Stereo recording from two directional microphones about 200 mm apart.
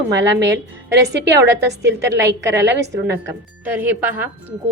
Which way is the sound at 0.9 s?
55° right (ahead or behind).